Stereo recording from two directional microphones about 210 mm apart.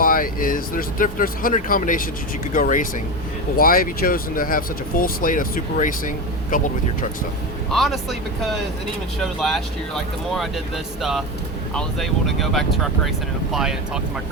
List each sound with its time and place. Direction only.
0.0 s speech: 40° left (ahead or behind)
7.7 s speech: centre (ahead or behind)
9.2 s speech: centre (ahead or behind)
11.7 s speech: centre (ahead or behind)